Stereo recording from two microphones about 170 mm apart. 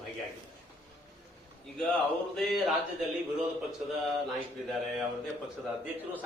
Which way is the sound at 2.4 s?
Centre (ahead or behind).